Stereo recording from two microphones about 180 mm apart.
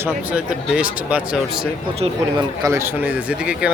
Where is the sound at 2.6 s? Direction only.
15° right (ahead or behind).